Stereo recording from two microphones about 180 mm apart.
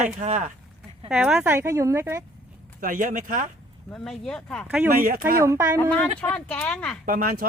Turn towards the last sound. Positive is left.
turn(degrees=-55)  # may be behind; listen again after turning